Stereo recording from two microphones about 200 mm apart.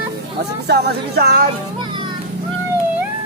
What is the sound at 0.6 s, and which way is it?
Music, 55° right (ahead or behind).